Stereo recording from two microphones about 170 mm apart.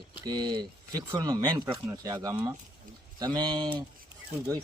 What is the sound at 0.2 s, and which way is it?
Speech, 25° right (ahead or behind).